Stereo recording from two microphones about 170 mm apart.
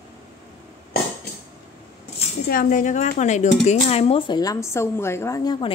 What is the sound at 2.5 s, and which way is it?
Speech, 55° left (ahead or behind).